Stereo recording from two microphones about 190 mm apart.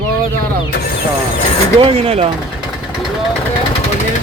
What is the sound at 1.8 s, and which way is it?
Speech, 30° right (ahead or behind).